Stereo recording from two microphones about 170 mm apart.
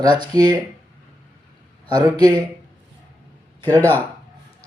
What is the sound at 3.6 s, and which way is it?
Speech, 10° left (ahead or behind).